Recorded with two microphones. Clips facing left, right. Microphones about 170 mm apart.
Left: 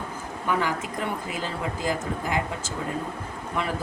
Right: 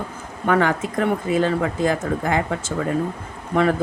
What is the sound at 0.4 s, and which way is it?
Speech, 65° right (ahead or behind).